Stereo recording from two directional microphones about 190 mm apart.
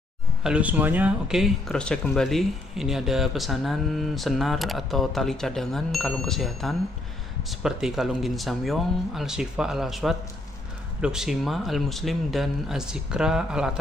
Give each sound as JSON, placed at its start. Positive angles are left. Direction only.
{"t": 0.4, "sound": "speech", "side_deg": -5}